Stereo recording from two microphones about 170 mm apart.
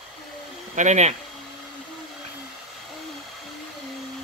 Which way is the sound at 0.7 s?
45° right (ahead or behind).